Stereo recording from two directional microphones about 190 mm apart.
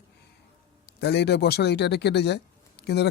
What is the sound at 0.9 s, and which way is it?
Speech, 60° left (ahead or behind).